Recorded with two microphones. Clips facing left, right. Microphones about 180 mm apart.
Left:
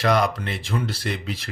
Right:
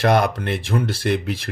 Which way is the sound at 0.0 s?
55° right (ahead or behind).